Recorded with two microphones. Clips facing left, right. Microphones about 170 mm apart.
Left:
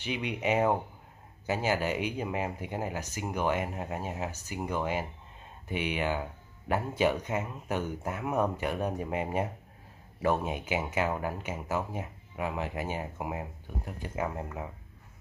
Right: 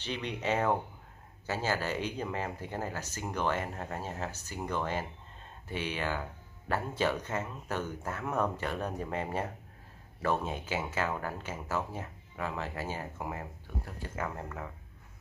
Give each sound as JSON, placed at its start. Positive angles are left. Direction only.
{"t": 0.0, "sound": "speech", "side_deg": 10}